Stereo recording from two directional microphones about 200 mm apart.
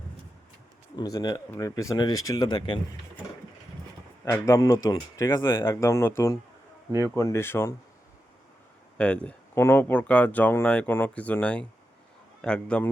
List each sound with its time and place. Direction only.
0.9 s speech: 20° left (ahead or behind)
4.3 s speech: 15° left (ahead or behind)
9.0 s speech: 5° left (ahead or behind)